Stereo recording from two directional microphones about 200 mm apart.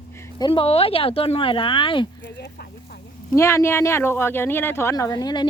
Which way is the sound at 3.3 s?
15° left (ahead or behind).